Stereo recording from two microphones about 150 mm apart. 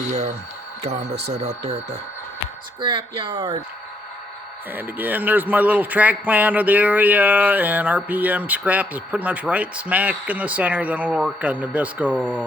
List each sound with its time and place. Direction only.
0.1 s speech: 50° right (ahead or behind)
1.4 s speech: 45° right (ahead or behind)
2.8 s speech: 30° right (ahead or behind)
4.7 s a man's voice: 10° right (ahead or behind)